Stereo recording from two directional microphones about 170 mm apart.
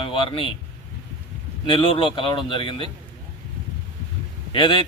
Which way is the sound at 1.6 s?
30° left (ahead or behind).